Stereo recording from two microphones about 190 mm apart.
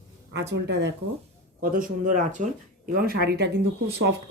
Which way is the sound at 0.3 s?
65° right (ahead or behind).